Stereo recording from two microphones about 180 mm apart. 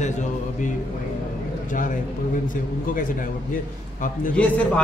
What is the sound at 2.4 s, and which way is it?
Speech, 50° left (ahead or behind).